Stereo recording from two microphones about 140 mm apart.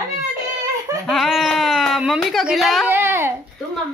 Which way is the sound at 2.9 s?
15° right (ahead or behind).